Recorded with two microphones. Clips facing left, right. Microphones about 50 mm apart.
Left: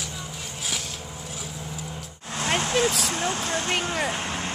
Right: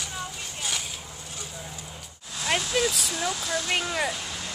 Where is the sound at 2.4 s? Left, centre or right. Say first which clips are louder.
Left 2 dB; left.